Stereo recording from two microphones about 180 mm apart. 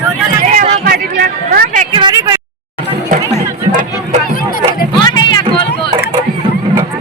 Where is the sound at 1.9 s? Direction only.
25° right (ahead or behind).